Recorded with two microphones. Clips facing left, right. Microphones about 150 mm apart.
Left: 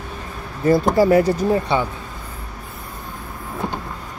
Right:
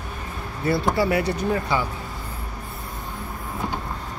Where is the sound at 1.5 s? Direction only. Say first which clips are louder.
Left 5 dB; 25° left (ahead or behind).